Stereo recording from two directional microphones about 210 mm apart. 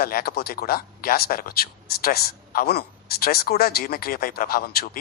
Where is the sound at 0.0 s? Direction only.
45° left (ahead or behind).